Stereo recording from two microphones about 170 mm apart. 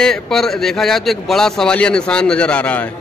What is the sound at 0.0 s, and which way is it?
A man's voice, 5° left (ahead or behind).